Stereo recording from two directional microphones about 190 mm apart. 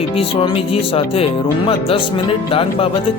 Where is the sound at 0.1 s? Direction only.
30° left (ahead or behind).